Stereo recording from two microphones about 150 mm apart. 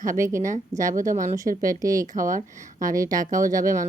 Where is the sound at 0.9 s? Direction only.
60° right (ahead or behind).